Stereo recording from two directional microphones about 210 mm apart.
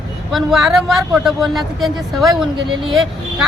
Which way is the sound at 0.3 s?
Centre (ahead or behind).